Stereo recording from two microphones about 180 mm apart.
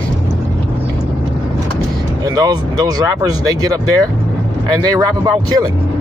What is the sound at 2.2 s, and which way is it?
Speech, 20° right (ahead or behind).